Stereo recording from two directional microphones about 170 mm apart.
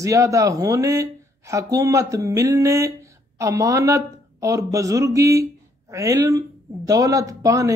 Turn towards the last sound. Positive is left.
turn(degrees=-20)  # may be behind; listen again after turning